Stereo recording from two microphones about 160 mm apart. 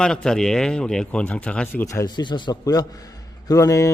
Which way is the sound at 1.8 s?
20° left (ahead or behind).